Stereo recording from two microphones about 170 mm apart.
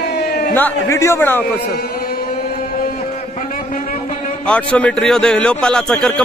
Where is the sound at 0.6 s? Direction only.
15° left (ahead or behind).